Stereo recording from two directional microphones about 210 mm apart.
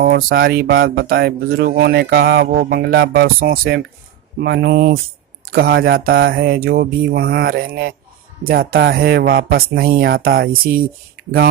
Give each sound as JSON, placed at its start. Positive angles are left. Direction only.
{"t": 0.0, "sound": "speech", "side_deg": -45}